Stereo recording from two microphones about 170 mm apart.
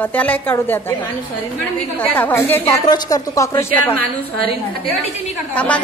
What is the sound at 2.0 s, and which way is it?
A woman's voice, 10° left (ahead or behind).